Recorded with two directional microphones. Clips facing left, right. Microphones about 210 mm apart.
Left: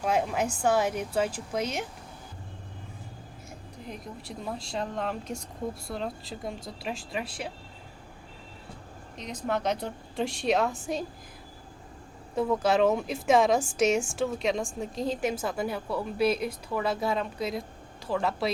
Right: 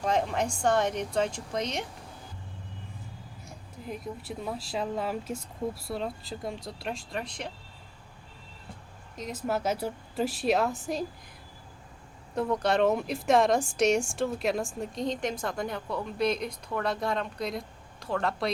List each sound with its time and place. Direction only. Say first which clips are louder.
0.0 s a woman's voice: left 1 dB; 5° left (ahead or behind)
3.8 s a woman's voice: right 4 dB; 5° right (ahead or behind)
9.1 s a woman's voice: even; 5° right (ahead or behind)
12.3 s a woman's voice: left 2 dB; 5° left (ahead or behind)